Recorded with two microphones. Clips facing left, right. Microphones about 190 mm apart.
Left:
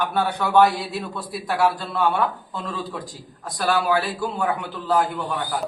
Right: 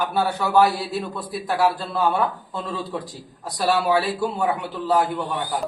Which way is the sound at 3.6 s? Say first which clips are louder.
Right 1 dB; 20° right (ahead or behind).